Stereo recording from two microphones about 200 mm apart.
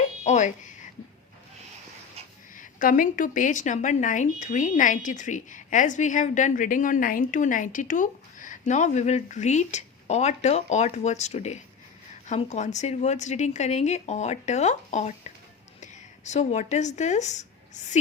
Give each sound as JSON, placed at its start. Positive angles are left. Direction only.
{"t": 0.3, "sound": "speech", "side_deg": 35}
{"t": 2.6, "sound": "speech", "side_deg": 40}